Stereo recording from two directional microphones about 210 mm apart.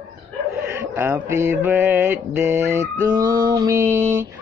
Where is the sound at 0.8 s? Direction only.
10° right (ahead or behind).